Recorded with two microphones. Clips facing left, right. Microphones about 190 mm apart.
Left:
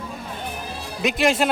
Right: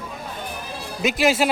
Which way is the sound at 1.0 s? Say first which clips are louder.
Right 1 dB; centre (ahead or behind).